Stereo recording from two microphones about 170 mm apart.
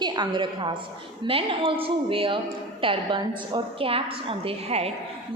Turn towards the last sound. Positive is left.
turn(degrees=-35)  # may be behind; listen again after turning